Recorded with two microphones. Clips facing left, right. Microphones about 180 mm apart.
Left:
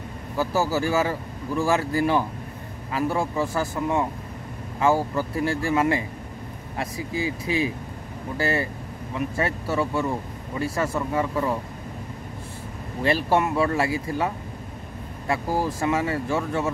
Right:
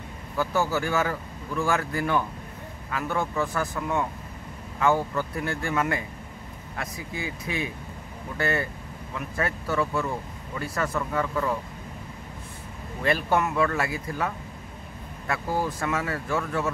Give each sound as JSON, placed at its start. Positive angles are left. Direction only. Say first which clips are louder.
{"t": 0.4, "sound": "speech", "louder": "left 2 dB", "side_deg": 30}
{"t": 13.0, "sound": "speech", "louder": "left 3 dB", "side_deg": 30}